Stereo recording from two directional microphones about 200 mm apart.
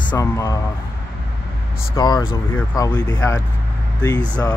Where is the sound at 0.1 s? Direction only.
15° left (ahead or behind).